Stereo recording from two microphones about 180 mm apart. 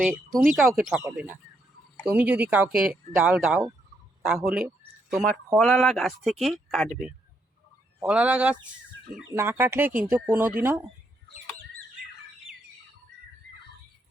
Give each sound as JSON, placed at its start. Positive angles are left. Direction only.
{"t": 0.4, "sound": "speech", "side_deg": -5}
{"t": 2.0, "sound": "speech", "side_deg": -10}